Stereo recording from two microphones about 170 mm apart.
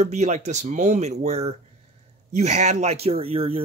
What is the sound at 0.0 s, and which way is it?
Speech, 40° right (ahead or behind).